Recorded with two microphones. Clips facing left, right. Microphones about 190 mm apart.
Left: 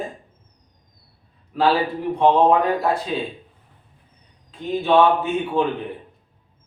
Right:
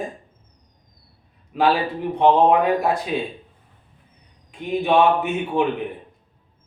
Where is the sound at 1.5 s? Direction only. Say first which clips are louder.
Even; 15° right (ahead or behind).